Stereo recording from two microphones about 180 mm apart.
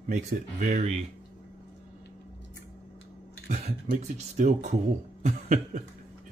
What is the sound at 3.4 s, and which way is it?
Speech, 40° right (ahead or behind).